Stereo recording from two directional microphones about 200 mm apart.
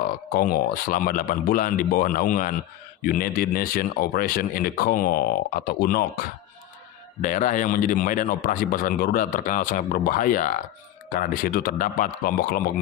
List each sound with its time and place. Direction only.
0.3 s speech: 50° left (ahead or behind)